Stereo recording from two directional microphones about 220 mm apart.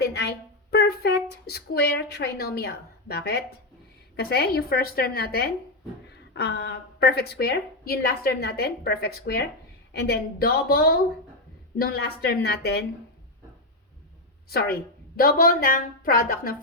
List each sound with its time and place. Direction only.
0.0 s a woman's voice: 50° left (ahead or behind)
14.5 s a woman's voice: 45° left (ahead or behind)